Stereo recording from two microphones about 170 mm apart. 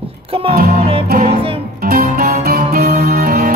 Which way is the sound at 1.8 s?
60° right (ahead or behind).